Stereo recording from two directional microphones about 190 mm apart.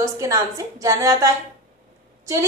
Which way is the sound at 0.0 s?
15° right (ahead or behind).